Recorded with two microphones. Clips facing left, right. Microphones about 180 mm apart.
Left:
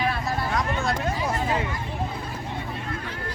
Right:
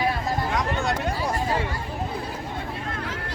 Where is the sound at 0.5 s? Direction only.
Centre (ahead or behind).